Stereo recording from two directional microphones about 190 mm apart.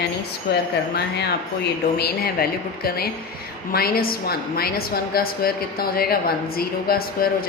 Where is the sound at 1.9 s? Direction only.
55° left (ahead or behind).